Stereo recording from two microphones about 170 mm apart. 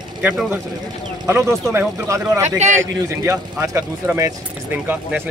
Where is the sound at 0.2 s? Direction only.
5° right (ahead or behind).